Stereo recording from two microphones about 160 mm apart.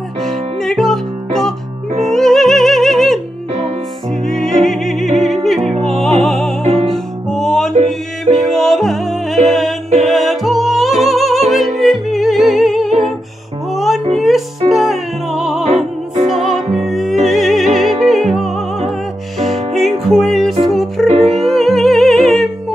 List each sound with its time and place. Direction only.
0.2 s music: centre (ahead or behind)
4.6 s music: centre (ahead or behind)
5.6 s opera: 40° right (ahead or behind)
5.9 s music: 5° left (ahead or behind)
6.6 s music: 40° right (ahead or behind)
6.9 s music: centre (ahead or behind)
13.7 s a sound: centre (ahead or behind)
14.1 s music: centre (ahead or behind)
16.8 s music: centre (ahead or behind)